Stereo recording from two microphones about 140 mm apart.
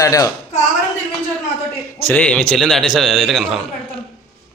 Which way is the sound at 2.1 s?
10° left (ahead or behind).